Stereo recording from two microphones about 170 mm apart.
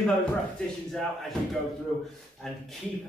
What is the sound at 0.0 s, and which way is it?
Speech, 5° left (ahead or behind).